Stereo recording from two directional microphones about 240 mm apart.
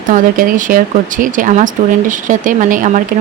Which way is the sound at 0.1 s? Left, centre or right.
Right.